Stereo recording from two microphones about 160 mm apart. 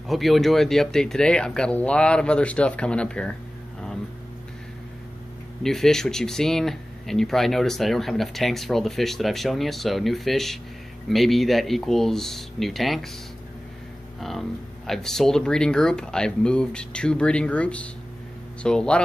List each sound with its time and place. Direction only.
0.1 s speech: centre (ahead or behind)
5.6 s speech: 5° left (ahead or behind)
14.9 s speech: 5° left (ahead or behind)